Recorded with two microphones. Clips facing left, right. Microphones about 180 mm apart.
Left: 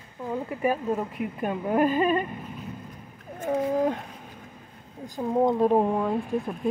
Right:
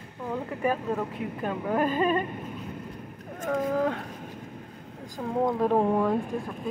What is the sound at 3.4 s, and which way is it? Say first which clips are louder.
Speech: left 2 dB; 10° left (ahead or behind).